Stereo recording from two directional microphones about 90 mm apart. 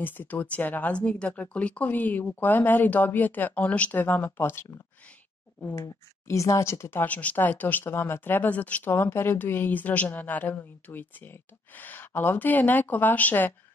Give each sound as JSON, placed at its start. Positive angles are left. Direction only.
{"t": 0.0, "sound": "speech", "side_deg": 20}
{"t": 6.2, "sound": "speech", "side_deg": 35}